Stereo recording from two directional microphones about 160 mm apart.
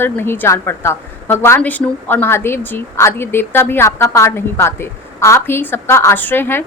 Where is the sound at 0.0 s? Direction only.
15° left (ahead or behind).